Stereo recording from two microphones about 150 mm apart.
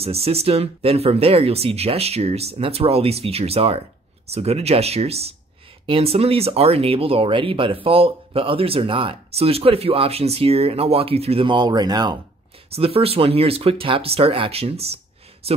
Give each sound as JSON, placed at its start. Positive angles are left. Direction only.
{"t": 0.0, "sound": "speech", "side_deg": -40}
{"t": 12.6, "sound": "speech", "side_deg": -40}